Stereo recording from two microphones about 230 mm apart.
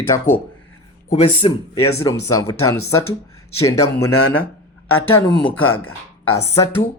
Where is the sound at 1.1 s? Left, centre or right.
Left.